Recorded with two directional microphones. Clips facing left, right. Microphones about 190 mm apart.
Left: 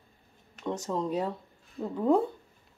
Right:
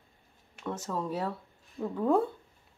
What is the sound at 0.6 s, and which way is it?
Speech, 15° left (ahead or behind).